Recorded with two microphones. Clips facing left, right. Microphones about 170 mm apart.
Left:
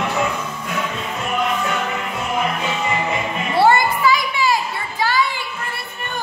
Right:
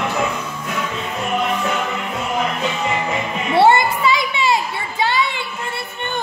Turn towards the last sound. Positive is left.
turn(degrees=-25)  # may be behind; listen again after turning